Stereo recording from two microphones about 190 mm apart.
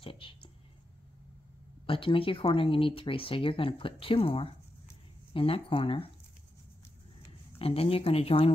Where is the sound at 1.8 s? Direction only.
25° left (ahead or behind).